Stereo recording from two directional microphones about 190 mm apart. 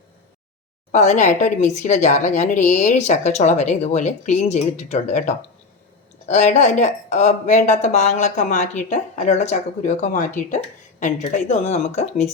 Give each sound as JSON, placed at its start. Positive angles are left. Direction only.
{"t": 0.9, "sound": "speech", "side_deg": 35}